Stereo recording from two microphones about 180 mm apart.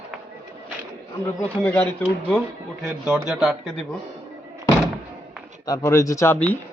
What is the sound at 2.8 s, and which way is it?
A man's voice, 5° right (ahead or behind).